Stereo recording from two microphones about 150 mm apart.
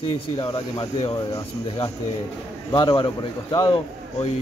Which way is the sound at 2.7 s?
30° left (ahead or behind).